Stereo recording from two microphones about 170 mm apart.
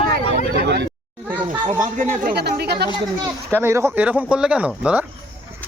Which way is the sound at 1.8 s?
50° right (ahead or behind).